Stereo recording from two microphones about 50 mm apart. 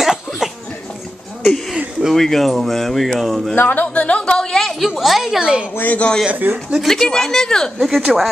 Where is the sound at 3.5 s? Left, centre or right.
Left.